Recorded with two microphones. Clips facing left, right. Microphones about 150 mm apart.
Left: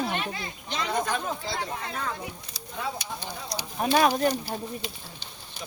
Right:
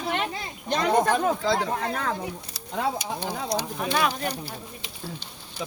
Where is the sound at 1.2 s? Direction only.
90° right.